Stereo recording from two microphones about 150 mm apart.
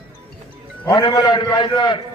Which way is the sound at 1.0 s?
30° left (ahead or behind).